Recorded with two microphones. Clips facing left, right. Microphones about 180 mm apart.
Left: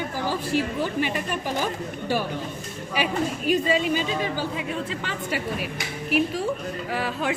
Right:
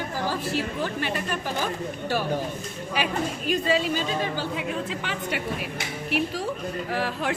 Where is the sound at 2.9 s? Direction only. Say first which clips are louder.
Left 2 dB; 10° left (ahead or behind).